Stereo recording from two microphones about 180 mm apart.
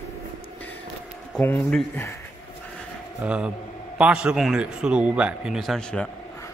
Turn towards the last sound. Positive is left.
turn(degrees=5)  # may be behind; listen again after turning